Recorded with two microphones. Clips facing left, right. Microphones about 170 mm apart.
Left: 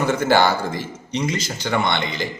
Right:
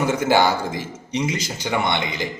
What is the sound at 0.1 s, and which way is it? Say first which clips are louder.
Speech: left 2 dB; 15° right (ahead or behind).